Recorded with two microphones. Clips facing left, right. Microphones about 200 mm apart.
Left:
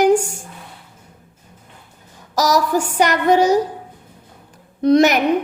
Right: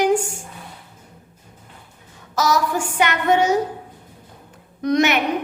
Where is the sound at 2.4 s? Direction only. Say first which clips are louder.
Left 3 dB; 40° left (ahead or behind).